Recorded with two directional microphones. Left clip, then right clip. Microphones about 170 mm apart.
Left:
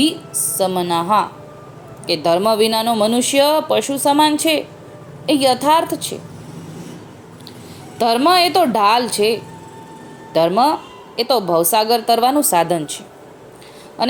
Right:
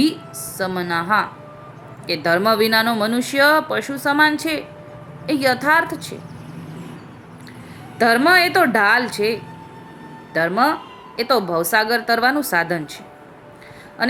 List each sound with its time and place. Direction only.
0.0 s a woman's voice: centre (ahead or behind)
8.0 s a woman's voice: 15° right (ahead or behind)
8.3 s speech: 15° left (ahead or behind)
10.5 s a woman's voice: 20° right (ahead or behind)
11.2 s a woman's voice: 5° left (ahead or behind)